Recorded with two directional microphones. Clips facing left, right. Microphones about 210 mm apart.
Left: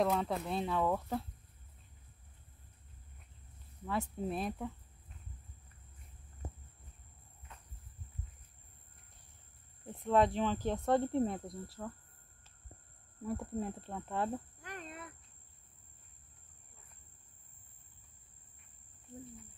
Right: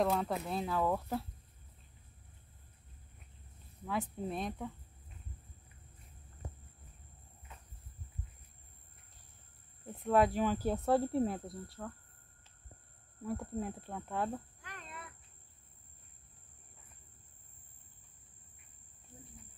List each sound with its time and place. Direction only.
0.0 s speech: centre (ahead or behind)
3.8 s speech: centre (ahead or behind)
10.0 s speech: 5° right (ahead or behind)
13.2 s speech: centre (ahead or behind)
14.6 s a sound: 40° left (ahead or behind)